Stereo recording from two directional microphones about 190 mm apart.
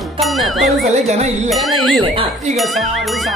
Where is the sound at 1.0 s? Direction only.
35° right (ahead or behind).